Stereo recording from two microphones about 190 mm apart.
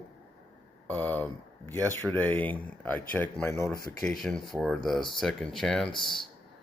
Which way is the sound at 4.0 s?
5° left (ahead or behind).